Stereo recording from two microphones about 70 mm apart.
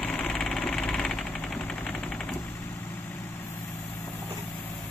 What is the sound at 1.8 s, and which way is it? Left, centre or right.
Vehicle, centre.